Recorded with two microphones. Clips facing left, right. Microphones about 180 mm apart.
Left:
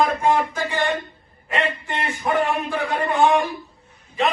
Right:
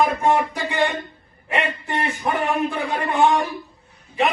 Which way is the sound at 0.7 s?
15° right (ahead or behind).